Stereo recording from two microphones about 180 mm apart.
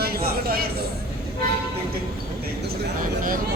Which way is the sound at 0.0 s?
55° right (ahead or behind).